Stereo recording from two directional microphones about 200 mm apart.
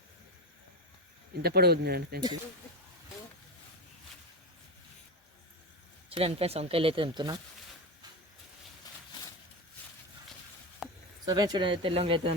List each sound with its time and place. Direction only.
1.4 s speech: 50° right (ahead or behind)
6.1 s speech: 30° right (ahead or behind)
10.8 s a sound: centre (ahead or behind)
11.3 s speech: 20° right (ahead or behind)